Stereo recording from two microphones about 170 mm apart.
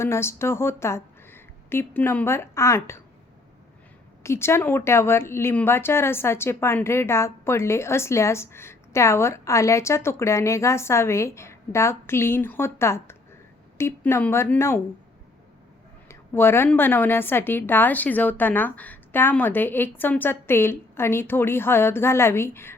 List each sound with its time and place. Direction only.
0.0 s speech: 15° left (ahead or behind)
4.2 s speech: 15° left (ahead or behind)
16.0 s speech: 15° left (ahead or behind)